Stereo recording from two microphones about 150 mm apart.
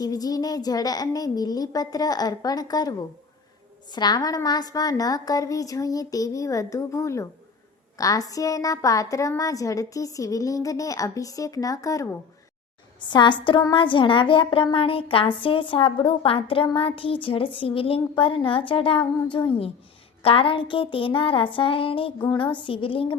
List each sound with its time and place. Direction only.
0.0 s a woman's voice: 25° left (ahead or behind)
3.9 s a woman's voice: 25° left (ahead or behind)